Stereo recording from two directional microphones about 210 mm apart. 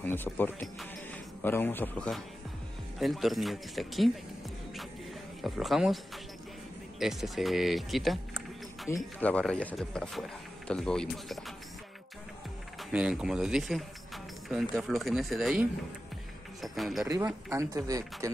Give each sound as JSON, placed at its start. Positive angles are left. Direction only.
{"t": 0.0, "sound": "speech", "side_deg": 10}
{"t": 5.4, "sound": "speech", "side_deg": 0}
{"t": 12.7, "sound": "speech", "side_deg": -5}
{"t": 16.6, "sound": "speech", "side_deg": 0}
{"t": 17.5, "sound": "speech", "side_deg": -15}